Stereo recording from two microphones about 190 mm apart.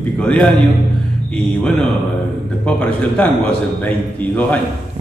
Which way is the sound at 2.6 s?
5° left (ahead or behind).